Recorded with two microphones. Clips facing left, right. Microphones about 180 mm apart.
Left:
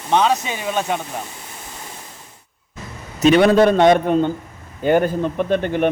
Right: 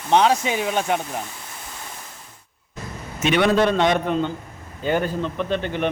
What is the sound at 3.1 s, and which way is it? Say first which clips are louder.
Speech: left 6 dB; 40° left (ahead or behind).